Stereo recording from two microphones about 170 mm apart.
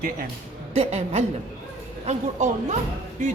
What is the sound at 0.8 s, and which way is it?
A woman's voice, 40° right (ahead or behind).